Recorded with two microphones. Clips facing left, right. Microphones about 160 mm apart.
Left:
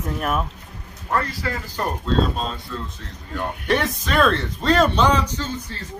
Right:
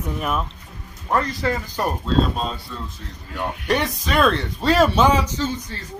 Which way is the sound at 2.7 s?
5° right (ahead or behind).